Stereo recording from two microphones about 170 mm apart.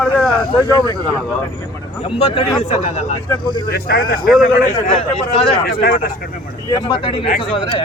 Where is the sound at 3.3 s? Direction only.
25° left (ahead or behind).